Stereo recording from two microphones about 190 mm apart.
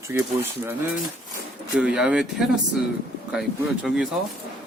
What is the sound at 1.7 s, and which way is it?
Speech, 5° right (ahead or behind).